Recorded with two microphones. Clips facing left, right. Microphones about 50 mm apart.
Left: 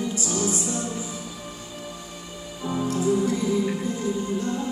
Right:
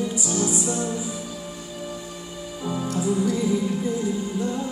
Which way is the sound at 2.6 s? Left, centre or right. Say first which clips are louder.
Left 1 dB; centre.